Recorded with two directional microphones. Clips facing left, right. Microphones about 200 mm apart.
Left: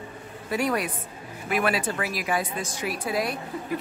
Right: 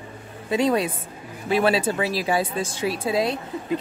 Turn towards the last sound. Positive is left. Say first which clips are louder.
# right 4 dB
turn(degrees=-25)  # may be behind; listen again after turning